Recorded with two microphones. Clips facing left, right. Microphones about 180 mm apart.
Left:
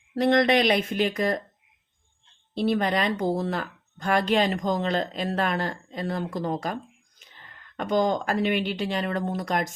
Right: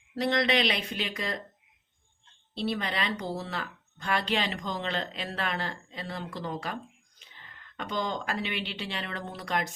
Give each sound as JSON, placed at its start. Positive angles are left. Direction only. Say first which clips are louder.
{"t": 0.2, "sound": "speech", "louder": "left 6 dB", "side_deg": 50}
{"t": 2.6, "sound": "speech", "louder": "left 7 dB", "side_deg": 50}